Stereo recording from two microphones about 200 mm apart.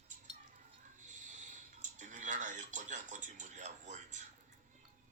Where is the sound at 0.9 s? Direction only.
40° right (ahead or behind).